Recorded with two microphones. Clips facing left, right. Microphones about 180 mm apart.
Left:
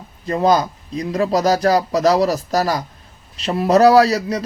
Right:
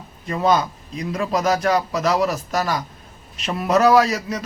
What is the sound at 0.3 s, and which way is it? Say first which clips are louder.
Speech: left 3 dB; 35° left (ahead or behind).